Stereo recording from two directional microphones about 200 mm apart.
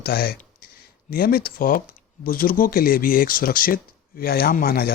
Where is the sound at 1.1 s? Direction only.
50° left (ahead or behind).